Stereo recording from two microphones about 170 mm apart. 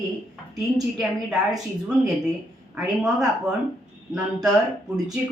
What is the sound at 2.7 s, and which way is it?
Speech, centre (ahead or behind).